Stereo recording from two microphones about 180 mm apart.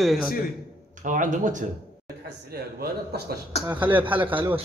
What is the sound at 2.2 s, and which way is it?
Speech, 60° right (ahead or behind).